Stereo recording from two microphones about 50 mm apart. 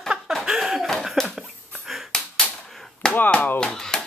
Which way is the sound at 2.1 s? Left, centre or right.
Centre.